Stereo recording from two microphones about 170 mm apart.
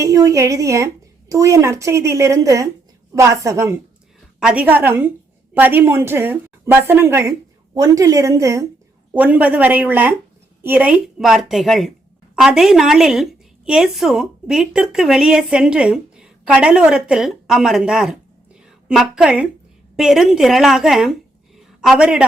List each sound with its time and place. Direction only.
0.0 s a woman's voice: 20° right (ahead or behind)
4.4 s a woman's voice: 5° right (ahead or behind)